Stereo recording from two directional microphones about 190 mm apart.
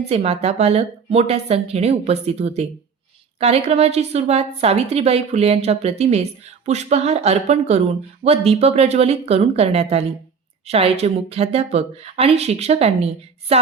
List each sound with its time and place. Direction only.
0.1 s a woman's voice: 35° right (ahead or behind)